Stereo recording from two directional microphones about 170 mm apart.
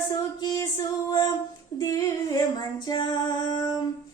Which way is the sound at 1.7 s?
25° left (ahead or behind).